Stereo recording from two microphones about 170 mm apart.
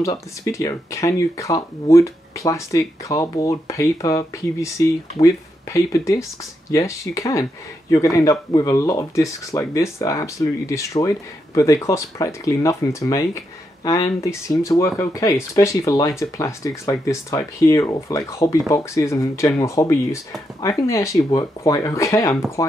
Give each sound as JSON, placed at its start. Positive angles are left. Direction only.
{"t": 0.0, "sound": "speech", "side_deg": 20}